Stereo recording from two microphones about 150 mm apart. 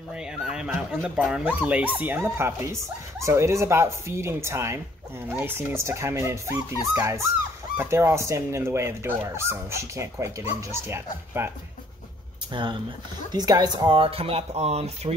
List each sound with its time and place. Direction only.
0.1 s speech: 5° right (ahead or behind)
12.5 s speech: 35° right (ahead or behind)